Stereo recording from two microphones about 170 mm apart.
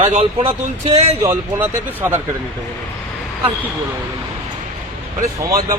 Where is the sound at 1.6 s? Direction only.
10° right (ahead or behind).